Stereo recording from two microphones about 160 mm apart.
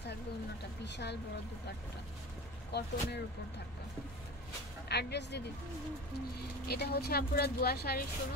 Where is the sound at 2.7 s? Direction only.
90° left.